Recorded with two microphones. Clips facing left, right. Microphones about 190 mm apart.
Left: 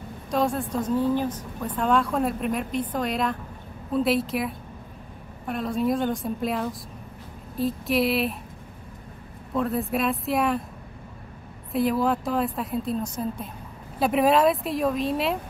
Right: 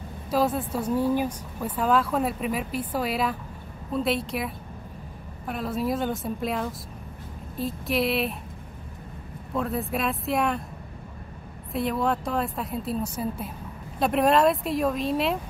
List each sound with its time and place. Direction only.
0.3 s speech: 5° right (ahead or behind)
9.5 s speech: centre (ahead or behind)
11.7 s speech: centre (ahead or behind)